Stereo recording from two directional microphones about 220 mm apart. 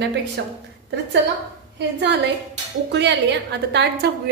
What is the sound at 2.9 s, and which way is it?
A woman's voice, 50° right (ahead or behind).